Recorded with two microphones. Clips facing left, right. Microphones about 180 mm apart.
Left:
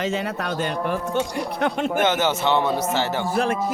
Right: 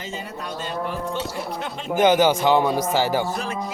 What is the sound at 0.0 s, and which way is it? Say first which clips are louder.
Speech: left 7 dB; 70° left (ahead or behind).